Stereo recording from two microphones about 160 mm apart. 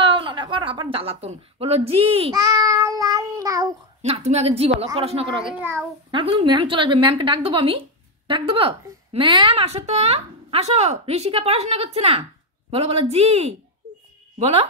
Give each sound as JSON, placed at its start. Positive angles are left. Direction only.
{"t": 0.0, "sound": "speech", "side_deg": -30}
{"t": 2.3, "sound": "child singing", "side_deg": -20}
{"t": 4.0, "sound": "speech", "side_deg": -40}
{"t": 5.5, "sound": "a child's voice", "side_deg": -10}
{"t": 6.1, "sound": "speech", "side_deg": -30}